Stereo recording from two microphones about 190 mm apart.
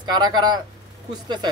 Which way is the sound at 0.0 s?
20° right (ahead or behind).